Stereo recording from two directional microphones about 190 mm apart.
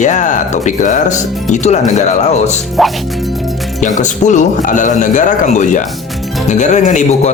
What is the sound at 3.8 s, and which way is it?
A man's voice, 40° left (ahead or behind).